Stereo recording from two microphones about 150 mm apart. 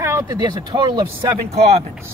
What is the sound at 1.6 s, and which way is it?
Speech, 45° right (ahead or behind).